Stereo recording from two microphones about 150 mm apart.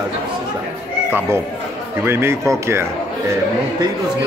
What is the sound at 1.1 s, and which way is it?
Speech, 15° right (ahead or behind).